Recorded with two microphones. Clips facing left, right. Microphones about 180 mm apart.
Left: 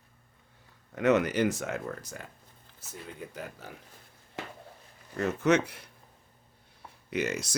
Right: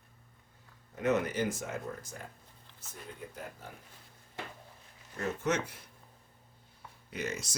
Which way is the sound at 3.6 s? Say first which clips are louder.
Left 3 dB; 85° left.